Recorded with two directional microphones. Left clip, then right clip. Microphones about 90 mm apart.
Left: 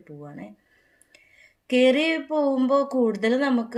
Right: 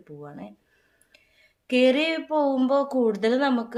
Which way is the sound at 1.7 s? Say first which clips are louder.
Left 1 dB; 15° right (ahead or behind).